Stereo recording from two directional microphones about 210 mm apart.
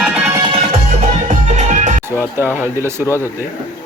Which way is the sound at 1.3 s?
35° right (ahead or behind).